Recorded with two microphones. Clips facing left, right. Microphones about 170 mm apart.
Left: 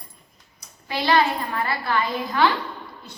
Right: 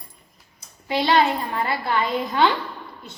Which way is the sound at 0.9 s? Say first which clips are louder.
Right 2 dB; 20° right (ahead or behind).